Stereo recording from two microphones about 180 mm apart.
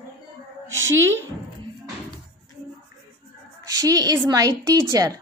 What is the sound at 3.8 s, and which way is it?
A woman's voice, 20° right (ahead or behind).